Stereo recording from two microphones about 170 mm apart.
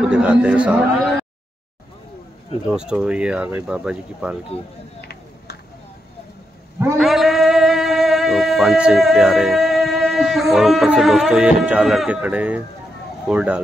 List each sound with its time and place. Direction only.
0.1 s a man's voice: 5° right (ahead or behind)
2.7 s speech: 5° right (ahead or behind)
7.0 s a man's voice: centre (ahead or behind)